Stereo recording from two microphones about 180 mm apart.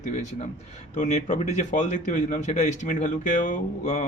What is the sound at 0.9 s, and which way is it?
Speech, 40° left (ahead or behind).